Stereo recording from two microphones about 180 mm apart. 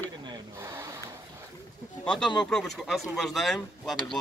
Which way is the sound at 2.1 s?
5° left (ahead or behind).